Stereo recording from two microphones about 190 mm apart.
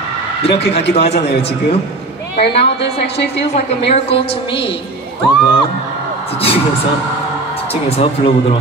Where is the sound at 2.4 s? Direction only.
65° left (ahead or behind).